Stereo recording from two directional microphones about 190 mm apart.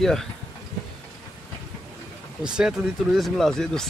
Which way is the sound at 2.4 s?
5° right (ahead or behind).